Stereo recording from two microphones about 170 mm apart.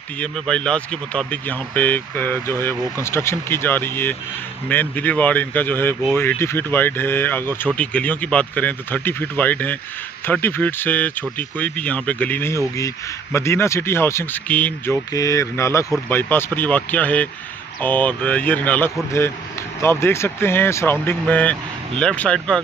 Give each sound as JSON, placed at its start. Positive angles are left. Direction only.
{"t": 0.2, "sound": "speech", "side_deg": 5}